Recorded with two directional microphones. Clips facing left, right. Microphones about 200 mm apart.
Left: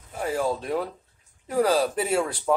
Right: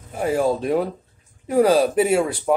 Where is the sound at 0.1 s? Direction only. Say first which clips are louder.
Right 6 dB; 20° right (ahead or behind).